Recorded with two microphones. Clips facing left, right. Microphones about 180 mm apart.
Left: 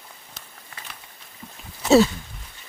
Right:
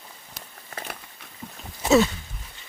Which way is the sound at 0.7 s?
50° right (ahead or behind).